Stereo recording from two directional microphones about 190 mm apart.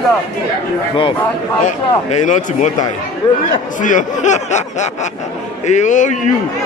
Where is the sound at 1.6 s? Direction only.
40° left (ahead or behind).